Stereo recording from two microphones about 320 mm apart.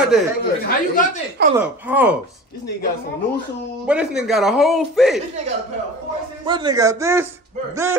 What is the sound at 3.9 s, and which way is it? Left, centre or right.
Speech, centre.